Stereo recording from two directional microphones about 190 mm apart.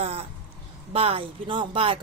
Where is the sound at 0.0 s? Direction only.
30° right (ahead or behind).